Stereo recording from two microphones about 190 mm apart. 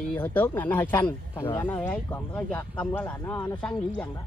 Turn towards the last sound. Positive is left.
turn(degrees=10)  # may be behind; listen again after turning